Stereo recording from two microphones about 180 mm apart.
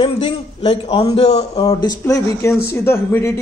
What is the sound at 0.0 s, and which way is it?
A man's voice, 30° left (ahead or behind).